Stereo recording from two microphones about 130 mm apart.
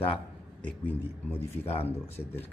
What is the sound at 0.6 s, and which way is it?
Speech, 15° left (ahead or behind).